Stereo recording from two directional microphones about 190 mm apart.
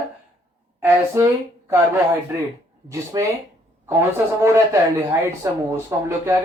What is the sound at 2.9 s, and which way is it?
Speech, 15° right (ahead or behind).